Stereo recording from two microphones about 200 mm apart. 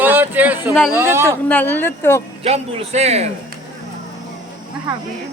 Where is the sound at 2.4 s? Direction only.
35° right (ahead or behind).